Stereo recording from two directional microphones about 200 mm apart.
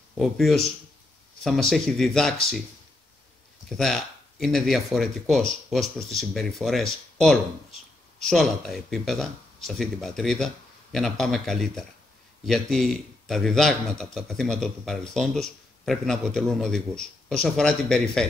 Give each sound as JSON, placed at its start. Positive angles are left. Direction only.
{"t": 0.2, "sound": "speech", "side_deg": 0}
{"t": 3.6, "sound": "speech", "side_deg": 0}